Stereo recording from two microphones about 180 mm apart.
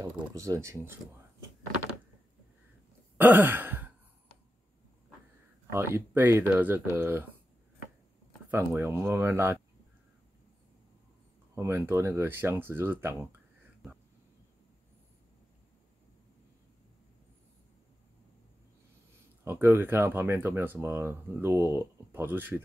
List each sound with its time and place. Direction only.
0.0 s speech: 20° right (ahead or behind)
3.2 s a sound: 10° right (ahead or behind)
5.7 s speech: 15° right (ahead or behind)
8.5 s speech: 15° right (ahead or behind)
11.5 s speech: 15° right (ahead or behind)
19.4 s speech: 10° right (ahead or behind)